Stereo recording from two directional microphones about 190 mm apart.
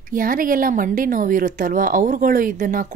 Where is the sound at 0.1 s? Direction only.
45° right (ahead or behind).